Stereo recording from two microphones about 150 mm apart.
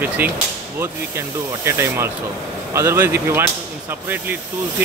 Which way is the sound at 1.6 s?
15° right (ahead or behind).